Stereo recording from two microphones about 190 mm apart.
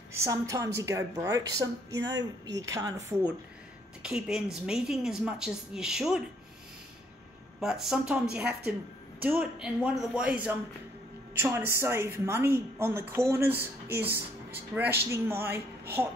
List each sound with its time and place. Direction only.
0.1 s a woman's voice: 15° right (ahead or behind)
4.0 s a woman's voice: 5° right (ahead or behind)
7.6 s a woman's voice: centre (ahead or behind)